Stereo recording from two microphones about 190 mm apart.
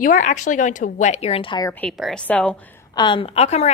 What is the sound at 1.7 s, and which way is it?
Speech, 5° left (ahead or behind).